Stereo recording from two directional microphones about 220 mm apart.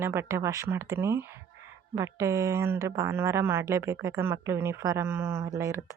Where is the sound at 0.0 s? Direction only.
10° right (ahead or behind).